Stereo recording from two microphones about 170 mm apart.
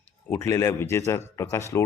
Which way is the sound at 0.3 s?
15° left (ahead or behind).